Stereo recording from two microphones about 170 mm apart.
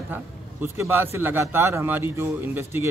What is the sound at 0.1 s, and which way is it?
A man's voice, 10° right (ahead or behind).